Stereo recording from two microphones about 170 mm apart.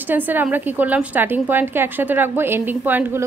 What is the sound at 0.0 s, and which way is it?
A woman's voice, 10° right (ahead or behind).